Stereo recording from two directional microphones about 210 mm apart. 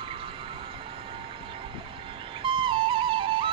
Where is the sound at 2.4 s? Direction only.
25° right (ahead or behind).